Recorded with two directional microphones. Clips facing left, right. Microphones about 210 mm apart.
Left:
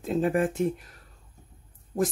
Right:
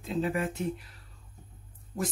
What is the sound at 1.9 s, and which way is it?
Speech, 40° left (ahead or behind).